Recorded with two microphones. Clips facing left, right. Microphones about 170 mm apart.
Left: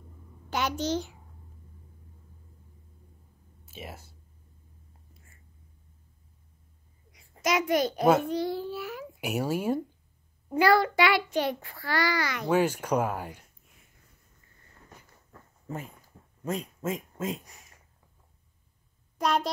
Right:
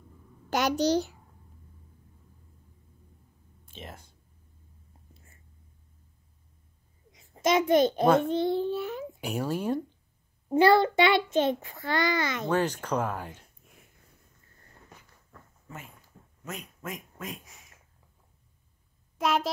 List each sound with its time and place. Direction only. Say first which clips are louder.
0.5 s a child's voice: right 4 dB; 40° right (ahead or behind)
3.6 s speech: left 2 dB; 5° left (ahead or behind)
7.1 s a sound: right 3 dB; 20° right (ahead or behind)
8.2 s a child's voice: right 3 dB; 25° right (ahead or behind)
9.2 s speech: left 2 dB; 10° left (ahead or behind)
10.5 s a child's voice: right 2 dB; 25° right (ahead or behind)
12.4 s speech: left 5 dB; 10° left (ahead or behind)
16.4 s speech: left 8 dB; 30° left (ahead or behind)
17.5 s a sound: left 1 dB; centre (ahead or behind)
19.1 s a sound: even; centre (ahead or behind)